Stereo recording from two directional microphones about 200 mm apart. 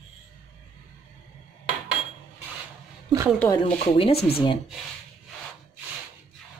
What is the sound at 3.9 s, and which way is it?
Speech, 30° left (ahead or behind).